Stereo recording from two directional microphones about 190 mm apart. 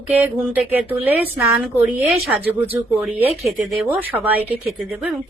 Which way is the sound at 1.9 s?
5° right (ahead or behind).